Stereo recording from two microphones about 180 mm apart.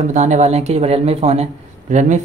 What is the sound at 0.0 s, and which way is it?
Speech, 40° right (ahead or behind).